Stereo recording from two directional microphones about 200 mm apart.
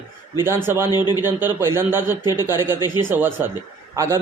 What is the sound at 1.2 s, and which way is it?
Speech, 10° right (ahead or behind).